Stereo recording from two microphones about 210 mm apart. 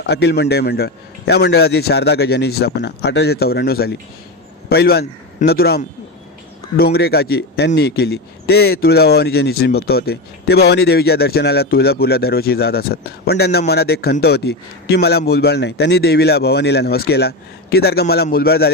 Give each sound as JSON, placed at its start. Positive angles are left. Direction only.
{"t": 0.0, "sound": "speech", "side_deg": 50}